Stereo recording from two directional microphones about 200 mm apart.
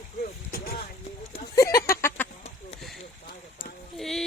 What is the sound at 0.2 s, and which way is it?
Vehicle, 50° left (ahead or behind).